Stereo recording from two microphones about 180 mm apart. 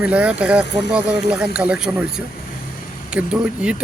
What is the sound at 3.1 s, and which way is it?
Speech, 5° right (ahead or behind).